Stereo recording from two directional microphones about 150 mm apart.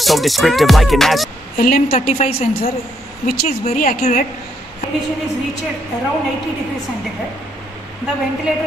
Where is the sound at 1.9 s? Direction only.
40° left (ahead or behind).